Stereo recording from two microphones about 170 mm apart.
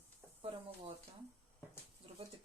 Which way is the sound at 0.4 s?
30° right (ahead or behind).